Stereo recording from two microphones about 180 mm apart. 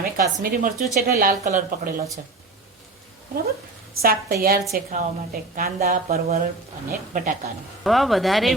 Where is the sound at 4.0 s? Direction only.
55° right (ahead or behind).